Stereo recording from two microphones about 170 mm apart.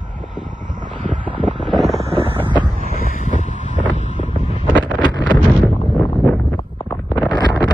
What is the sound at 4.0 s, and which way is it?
Wind noise, 45° left (ahead or behind).